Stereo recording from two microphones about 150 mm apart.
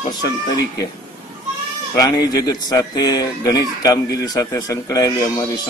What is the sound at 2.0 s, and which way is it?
A man's voice, 25° left (ahead or behind).